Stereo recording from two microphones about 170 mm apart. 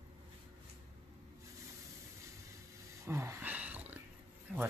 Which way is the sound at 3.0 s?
15° right (ahead or behind).